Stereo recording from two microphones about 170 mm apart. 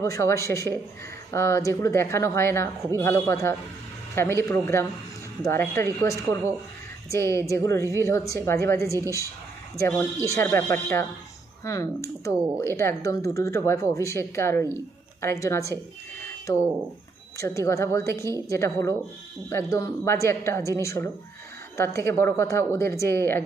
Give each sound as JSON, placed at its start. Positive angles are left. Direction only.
{"t": 0.0, "sound": "speech", "side_deg": 15}
{"t": 7.1, "sound": "speech", "side_deg": 15}